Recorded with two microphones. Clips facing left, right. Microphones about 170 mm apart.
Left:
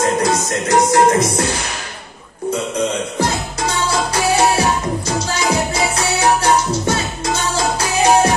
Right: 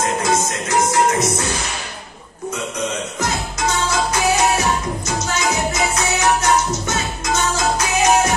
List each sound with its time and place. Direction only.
0.2 s music: 35° left (ahead or behind)
3.2 s music: 30° left (ahead or behind)